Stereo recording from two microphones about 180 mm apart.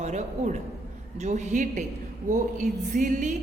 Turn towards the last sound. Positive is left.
turn(degrees=-45)  # may be behind; listen again after turning